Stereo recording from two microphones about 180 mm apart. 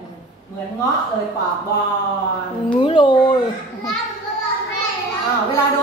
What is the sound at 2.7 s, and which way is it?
Speech, 25° left (ahead or behind).